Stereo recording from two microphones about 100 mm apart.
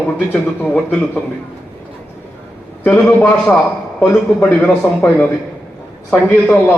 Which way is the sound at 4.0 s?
20° left (ahead or behind).